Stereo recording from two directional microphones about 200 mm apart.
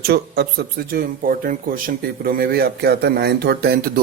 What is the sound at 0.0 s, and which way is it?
Speech, 50° right (ahead or behind).